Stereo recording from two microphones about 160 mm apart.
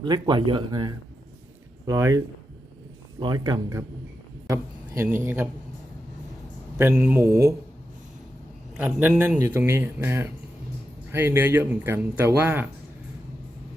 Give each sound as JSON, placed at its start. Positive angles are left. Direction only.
{"t": 0.0, "sound": "a man's voice", "side_deg": -30}
{"t": 6.7, "sound": "a man's voice", "side_deg": -10}
{"t": 8.8, "sound": "a man's voice", "side_deg": -10}